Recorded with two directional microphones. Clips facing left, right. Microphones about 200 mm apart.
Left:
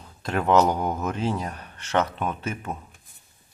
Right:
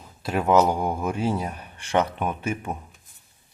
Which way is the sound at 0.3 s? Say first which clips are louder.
Right 1 dB; 5° right (ahead or behind).